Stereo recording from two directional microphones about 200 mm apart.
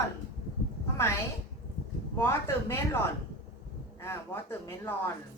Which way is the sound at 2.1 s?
10° left (ahead or behind).